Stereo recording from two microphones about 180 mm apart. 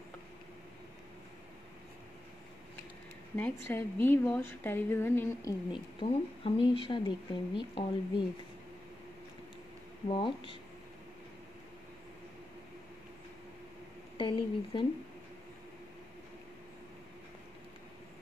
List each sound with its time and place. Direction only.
3.3 s a woman's voice: 10° left (ahead or behind)
5.9 s speech: 30° left (ahead or behind)
10.0 s speech: 30° left (ahead or behind)
14.1 s speech: 25° left (ahead or behind)